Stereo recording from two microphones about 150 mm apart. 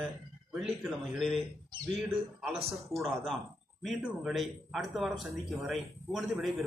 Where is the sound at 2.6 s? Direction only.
45° right (ahead or behind).